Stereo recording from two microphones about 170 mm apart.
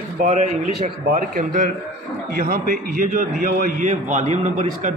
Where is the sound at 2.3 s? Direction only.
65° right (ahead or behind).